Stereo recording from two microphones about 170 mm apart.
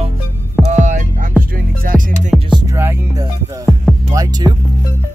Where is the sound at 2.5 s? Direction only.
20° right (ahead or behind).